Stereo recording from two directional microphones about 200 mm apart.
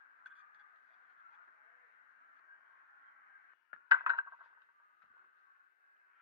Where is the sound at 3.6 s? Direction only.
20° right (ahead or behind).